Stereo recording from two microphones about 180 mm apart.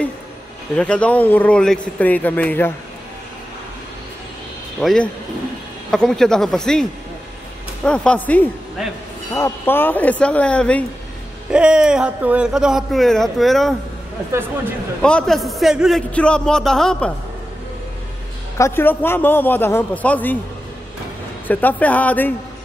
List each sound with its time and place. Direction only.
0.7 s a man's voice: 5° left (ahead or behind)
4.7 s a man's voice: 5° left (ahead or behind)
11.5 s speech: 5° right (ahead or behind)
15.0 s speech: 5° left (ahead or behind)
18.6 s a man's voice: 15° left (ahead or behind)
21.5 s a man's voice: 10° left (ahead or behind)